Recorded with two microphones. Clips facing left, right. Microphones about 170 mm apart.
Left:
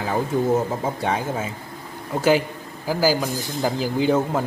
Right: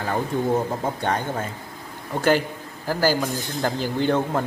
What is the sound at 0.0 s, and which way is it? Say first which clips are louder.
Speech: left 2 dB; 5° left (ahead or behind).